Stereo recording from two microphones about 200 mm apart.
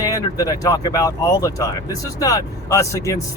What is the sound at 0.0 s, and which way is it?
Speech, 15° left (ahead or behind).